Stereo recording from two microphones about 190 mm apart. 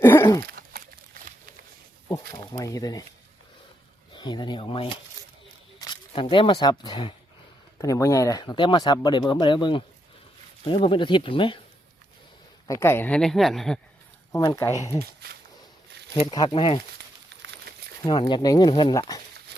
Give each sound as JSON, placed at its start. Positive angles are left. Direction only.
{"t": 0.0, "sound": "a sound", "side_deg": 15}
{"t": 0.4, "sound": "a sound", "side_deg": -55}
{"t": 2.3, "sound": "speech", "side_deg": 20}
{"t": 4.1, "sound": "speech", "side_deg": 25}
{"t": 12.6, "sound": "speech", "side_deg": 15}
{"t": 14.3, "sound": "speech", "side_deg": 15}
{"t": 16.1, "sound": "speech", "side_deg": 25}
{"t": 17.2, "sound": "a sound", "side_deg": -65}
{"t": 18.0, "sound": "speech", "side_deg": 20}